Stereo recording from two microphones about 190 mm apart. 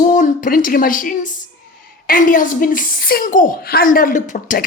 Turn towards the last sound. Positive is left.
turn(degrees=45)  # may be behind; listen again after turning